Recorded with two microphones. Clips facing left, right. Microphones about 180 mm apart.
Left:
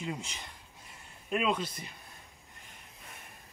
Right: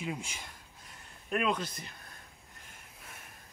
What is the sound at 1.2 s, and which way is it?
Speech, 5° left (ahead or behind).